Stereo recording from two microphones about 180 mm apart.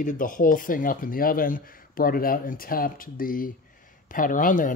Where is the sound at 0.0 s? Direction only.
50° left (ahead or behind).